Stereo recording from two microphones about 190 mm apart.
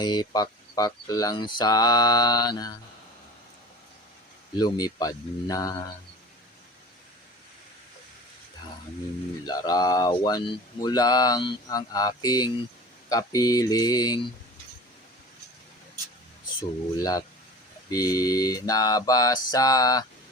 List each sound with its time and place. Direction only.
0.0 s speech: 20° left (ahead or behind)
4.5 s speech: 20° left (ahead or behind)
9.5 s speech: 20° left (ahead or behind)
17.0 s speech: 20° left (ahead or behind)